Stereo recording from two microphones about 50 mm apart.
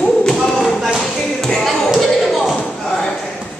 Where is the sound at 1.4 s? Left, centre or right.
Centre.